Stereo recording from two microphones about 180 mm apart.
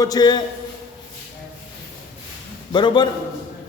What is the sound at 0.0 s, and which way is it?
Speech, 20° left (ahead or behind).